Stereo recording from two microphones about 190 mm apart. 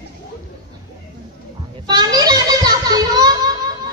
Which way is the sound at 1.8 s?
20° right (ahead or behind).